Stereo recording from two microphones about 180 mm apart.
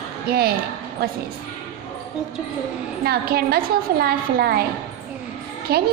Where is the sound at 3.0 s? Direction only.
60° right (ahead or behind).